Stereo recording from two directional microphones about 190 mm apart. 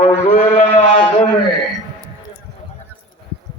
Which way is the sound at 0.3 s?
40° left (ahead or behind).